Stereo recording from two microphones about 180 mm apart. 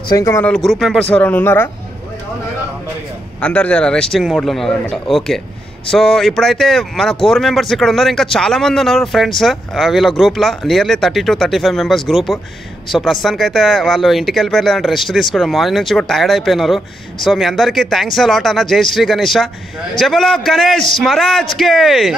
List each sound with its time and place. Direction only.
0.1 s speech: 15° left (ahead or behind)
0.5 s speech: centre (ahead or behind)
1.1 s speech: 10° left (ahead or behind)
3.3 s speech: 5° left (ahead or behind)